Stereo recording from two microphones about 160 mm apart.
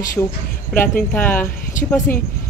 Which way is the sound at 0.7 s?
10° left (ahead or behind).